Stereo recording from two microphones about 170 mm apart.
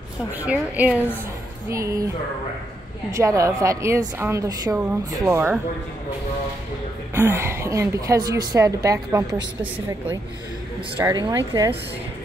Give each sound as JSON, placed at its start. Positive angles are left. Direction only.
{"t": 0.4, "sound": "a woman's voice", "side_deg": -10}
{"t": 3.1, "sound": "a woman's voice", "side_deg": -20}
{"t": 7.2, "sound": "a woman's voice", "side_deg": -15}
{"t": 11.1, "sound": "speech", "side_deg": -25}